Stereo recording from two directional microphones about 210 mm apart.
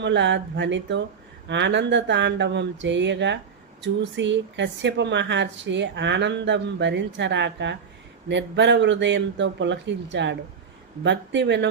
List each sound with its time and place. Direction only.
0.0 s speech: 60° right (ahead or behind)